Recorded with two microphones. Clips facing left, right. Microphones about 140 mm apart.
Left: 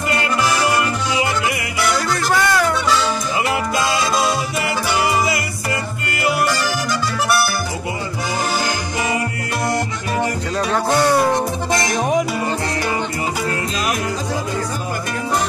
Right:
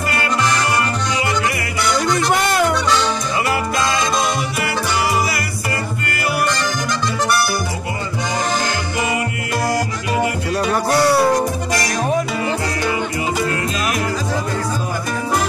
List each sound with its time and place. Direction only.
2.0 s music: 20° right (ahead or behind)
11.3 s music: 25° left (ahead or behind)